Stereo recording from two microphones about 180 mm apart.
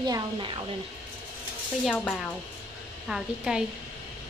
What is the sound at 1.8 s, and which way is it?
Speech, 5° left (ahead or behind).